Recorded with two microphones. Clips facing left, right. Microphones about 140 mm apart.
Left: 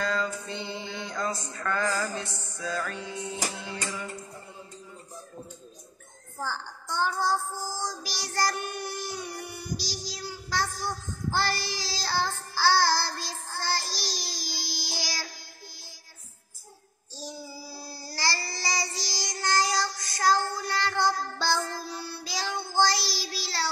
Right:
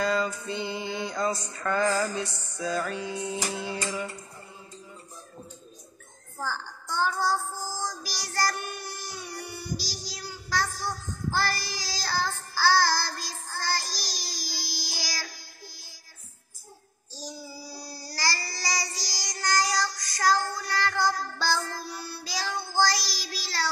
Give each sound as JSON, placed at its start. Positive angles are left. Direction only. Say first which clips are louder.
{"t": 0.0, "sound": "mantra", "louder": "right 3 dB", "side_deg": -10}
{"t": 6.4, "sound": "child singing", "louder": "even", "side_deg": 15}
{"t": 17.2, "sound": "child singing", "louder": "even", "side_deg": 25}